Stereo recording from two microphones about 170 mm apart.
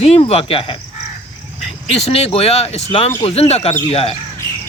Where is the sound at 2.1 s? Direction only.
35° left (ahead or behind).